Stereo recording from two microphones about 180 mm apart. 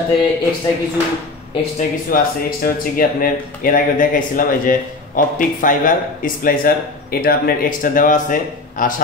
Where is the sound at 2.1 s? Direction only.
55° left (ahead or behind).